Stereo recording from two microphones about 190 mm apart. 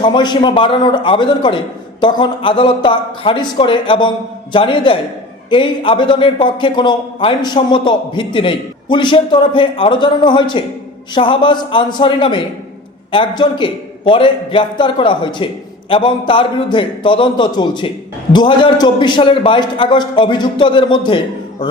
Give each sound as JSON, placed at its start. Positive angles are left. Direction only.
{"t": 0.0, "sound": "a man's voice", "side_deg": 25}